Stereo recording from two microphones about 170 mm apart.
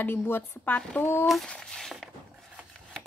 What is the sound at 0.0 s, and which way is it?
Speech, 10° left (ahead or behind).